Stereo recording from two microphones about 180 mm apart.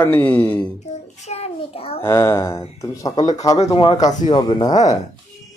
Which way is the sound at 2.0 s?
15° left (ahead or behind).